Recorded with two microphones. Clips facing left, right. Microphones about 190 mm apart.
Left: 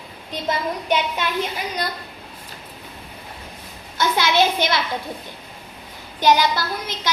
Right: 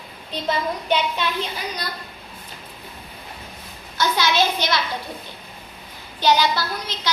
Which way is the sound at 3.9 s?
55° left (ahead or behind).